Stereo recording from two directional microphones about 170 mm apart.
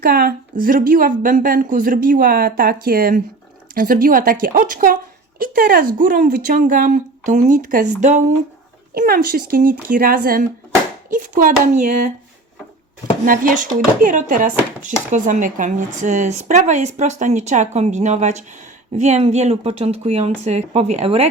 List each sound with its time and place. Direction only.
0.0 s a woman's voice: 60° right (ahead or behind); by 8.2 s 45° right (ahead or behind)
9.0 s a woman's voice: 55° right (ahead or behind)
13.2 s a woman's voice: 50° right (ahead or behind)